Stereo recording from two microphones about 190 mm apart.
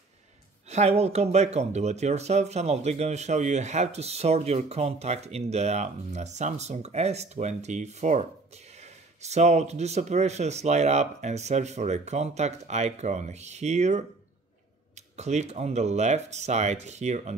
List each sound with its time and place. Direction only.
0.7 s speech: 35° right (ahead or behind)